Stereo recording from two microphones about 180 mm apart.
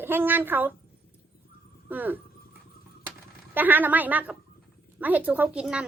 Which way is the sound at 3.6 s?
10° right (ahead or behind).